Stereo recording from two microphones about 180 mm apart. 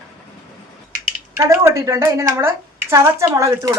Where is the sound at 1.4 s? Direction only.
15° right (ahead or behind).